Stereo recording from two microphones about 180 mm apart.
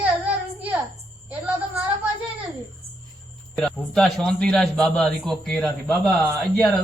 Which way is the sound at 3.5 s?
Centre (ahead or behind).